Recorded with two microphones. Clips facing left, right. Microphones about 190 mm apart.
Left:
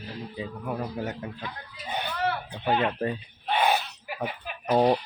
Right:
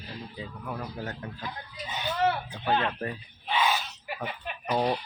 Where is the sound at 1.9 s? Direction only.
60° left (ahead or behind).